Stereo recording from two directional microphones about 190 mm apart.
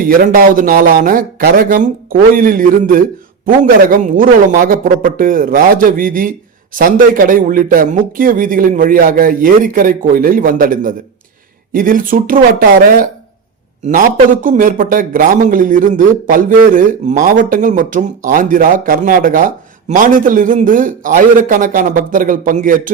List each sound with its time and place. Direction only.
0.0 s speech: 50° right (ahead or behind)
14.4 s speech: 45° right (ahead or behind)